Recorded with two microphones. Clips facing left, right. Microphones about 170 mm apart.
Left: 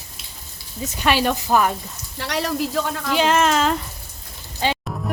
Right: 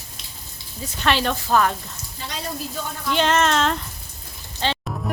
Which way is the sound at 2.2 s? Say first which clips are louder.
Left 8 dB; 75° left (ahead or behind).